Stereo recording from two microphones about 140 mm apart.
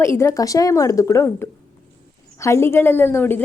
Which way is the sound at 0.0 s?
20° left (ahead or behind).